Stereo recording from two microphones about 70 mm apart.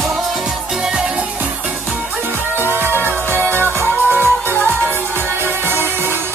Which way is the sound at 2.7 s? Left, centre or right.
Right.